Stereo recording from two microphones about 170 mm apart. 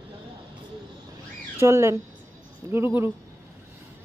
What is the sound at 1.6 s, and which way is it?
A woman's voice, 15° right (ahead or behind).